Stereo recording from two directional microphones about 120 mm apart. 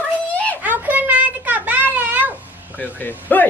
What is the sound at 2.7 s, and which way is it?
Speech, 15° left (ahead or behind).